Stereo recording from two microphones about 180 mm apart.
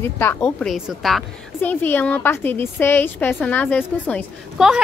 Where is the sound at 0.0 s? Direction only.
15° left (ahead or behind).